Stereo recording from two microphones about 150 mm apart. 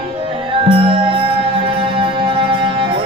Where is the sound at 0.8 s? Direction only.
35° right (ahead or behind).